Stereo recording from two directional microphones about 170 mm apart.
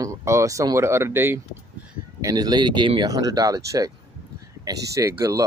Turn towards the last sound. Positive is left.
turn(degrees=-15)  # may be behind; listen again after turning